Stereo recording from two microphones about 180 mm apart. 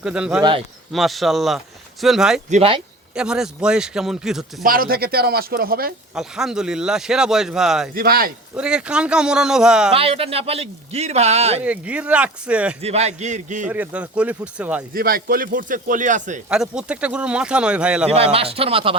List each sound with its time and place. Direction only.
0.0 s speech: 5° right (ahead or behind)
2.5 s a man's voice: 35° right (ahead or behind)
3.2 s speech: 5° right (ahead or behind)
4.6 s speech: 55° right (ahead or behind)
6.1 s speech: 5° right (ahead or behind)
7.9 s speech: 55° right (ahead or behind)
8.5 s speech: 5° right (ahead or behind)
9.9 s a man's voice: 30° right (ahead or behind)
11.6 s speech: 5° right (ahead or behind)
12.8 s a man's voice: 35° right (ahead or behind)
13.7 s speech: 5° right (ahead or behind)
14.9 s speech: 55° right (ahead or behind)
16.5 s speech: 5° right (ahead or behind)
18.1 s a man's voice: 35° right (ahead or behind)